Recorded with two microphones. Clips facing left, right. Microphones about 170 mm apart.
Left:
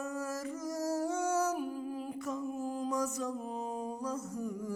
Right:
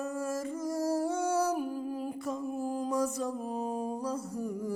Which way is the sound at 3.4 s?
50° right (ahead or behind).